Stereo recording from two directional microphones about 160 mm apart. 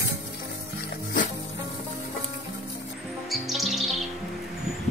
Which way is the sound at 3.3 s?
Centre (ahead or behind).